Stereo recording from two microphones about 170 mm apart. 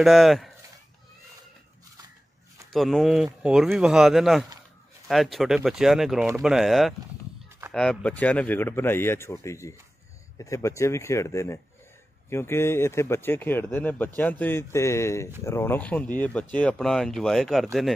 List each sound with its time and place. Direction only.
0.0 s speech: centre (ahead or behind)
2.7 s speech: centre (ahead or behind)